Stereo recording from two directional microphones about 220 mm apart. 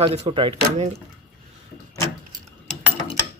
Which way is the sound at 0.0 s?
25° right (ahead or behind).